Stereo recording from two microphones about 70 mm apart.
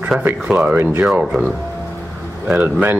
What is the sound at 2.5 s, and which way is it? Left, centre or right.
Speech, right.